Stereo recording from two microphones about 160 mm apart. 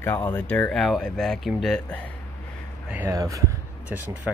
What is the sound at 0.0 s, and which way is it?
Speech, 15° left (ahead or behind).